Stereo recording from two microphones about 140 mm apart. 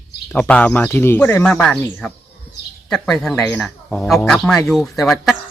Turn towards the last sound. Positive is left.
turn(degrees=0)  # may be behind; listen again after turning